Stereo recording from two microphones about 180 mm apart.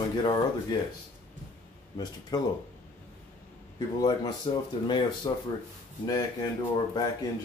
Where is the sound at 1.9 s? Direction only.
25° left (ahead or behind).